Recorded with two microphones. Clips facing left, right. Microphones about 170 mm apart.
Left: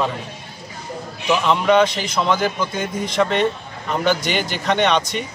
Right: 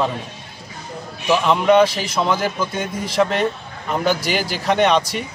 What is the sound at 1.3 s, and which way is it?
A man's voice, centre (ahead or behind).